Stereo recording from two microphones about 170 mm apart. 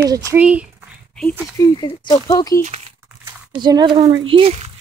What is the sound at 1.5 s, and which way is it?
Speech, 25° left (ahead or behind).